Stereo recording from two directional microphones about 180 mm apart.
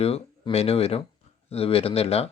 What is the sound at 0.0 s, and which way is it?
Speech, 35° left (ahead or behind).